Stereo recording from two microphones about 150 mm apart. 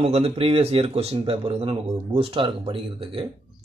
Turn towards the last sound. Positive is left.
turn(degrees=-35)  # may be behind; listen again after turning